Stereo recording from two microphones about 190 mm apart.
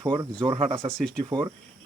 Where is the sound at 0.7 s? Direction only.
5° left (ahead or behind).